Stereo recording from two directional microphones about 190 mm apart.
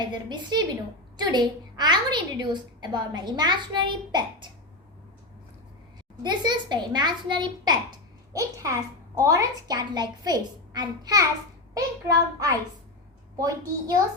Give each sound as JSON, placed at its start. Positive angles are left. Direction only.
{"t": 0.0, "sound": "a child's voice", "side_deg": -25}
{"t": 6.2, "sound": "a child's voice", "side_deg": -20}